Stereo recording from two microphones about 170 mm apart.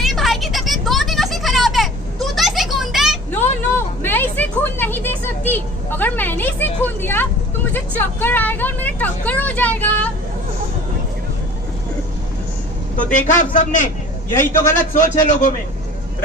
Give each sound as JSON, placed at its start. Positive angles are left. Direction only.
{"t": 0.0, "sound": "a sound", "side_deg": 0}
{"t": 3.3, "sound": "a sound", "side_deg": 15}
{"t": 7.7, "sound": "speech", "side_deg": 10}
{"t": 12.9, "sound": "a man's voice", "side_deg": 50}
{"t": 14.3, "sound": "speech", "side_deg": 15}
{"t": 15.0, "sound": "a man's voice", "side_deg": 45}